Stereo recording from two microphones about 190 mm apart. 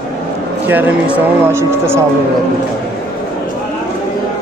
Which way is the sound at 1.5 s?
15° right (ahead or behind).